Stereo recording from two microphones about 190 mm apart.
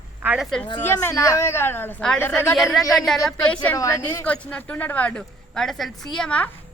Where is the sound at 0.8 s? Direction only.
10° left (ahead or behind).